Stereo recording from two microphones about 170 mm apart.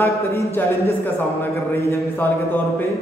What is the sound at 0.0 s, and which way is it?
A man's voice, 15° left (ahead or behind).